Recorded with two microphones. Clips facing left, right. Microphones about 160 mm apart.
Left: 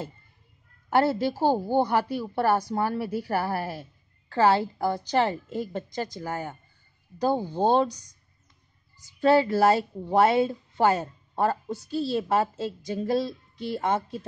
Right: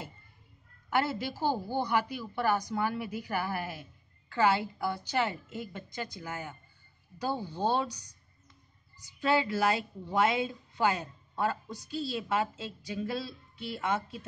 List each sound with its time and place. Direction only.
0.8 s a woman's voice: 40° left (ahead or behind)
9.2 s speech: 40° left (ahead or behind)